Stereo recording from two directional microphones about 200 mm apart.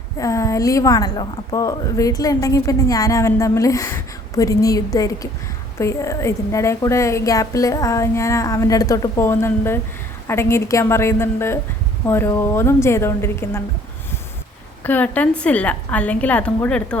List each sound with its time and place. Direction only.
0.2 s a woman's voice: 15° left (ahead or behind)
14.8 s a woman's voice: 10° left (ahead or behind)